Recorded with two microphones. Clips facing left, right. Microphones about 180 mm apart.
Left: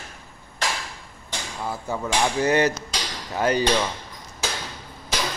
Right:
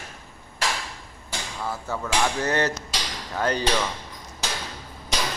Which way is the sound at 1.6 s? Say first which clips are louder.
Left 2 dB; 15° left (ahead or behind).